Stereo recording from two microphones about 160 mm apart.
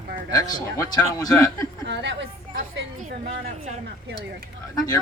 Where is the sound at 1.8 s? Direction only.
90° right.